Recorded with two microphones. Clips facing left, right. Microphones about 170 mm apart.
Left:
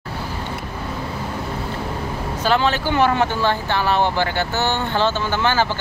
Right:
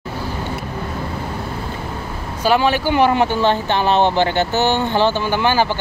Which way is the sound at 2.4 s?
15° right (ahead or behind).